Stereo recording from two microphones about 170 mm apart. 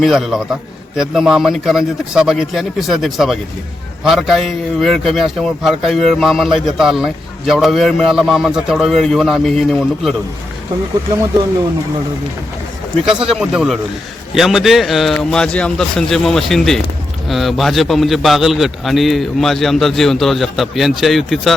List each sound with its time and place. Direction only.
0.0 s a man's voice: centre (ahead or behind)
13.1 s a man's voice: 5° right (ahead or behind)